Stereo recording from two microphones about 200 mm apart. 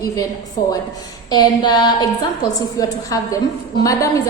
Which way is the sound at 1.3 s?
20° left (ahead or behind).